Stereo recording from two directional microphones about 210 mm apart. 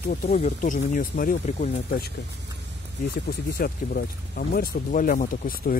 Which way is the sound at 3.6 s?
45° left (ahead or behind).